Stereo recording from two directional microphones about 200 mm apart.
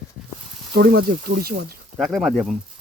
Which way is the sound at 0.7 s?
50° right (ahead or behind).